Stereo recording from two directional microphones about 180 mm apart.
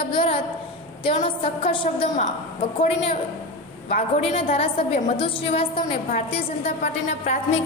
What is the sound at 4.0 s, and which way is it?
A woman's voice, 35° left (ahead or behind).